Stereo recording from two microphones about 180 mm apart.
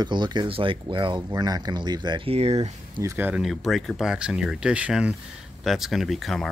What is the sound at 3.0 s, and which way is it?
Speech, 15° right (ahead or behind).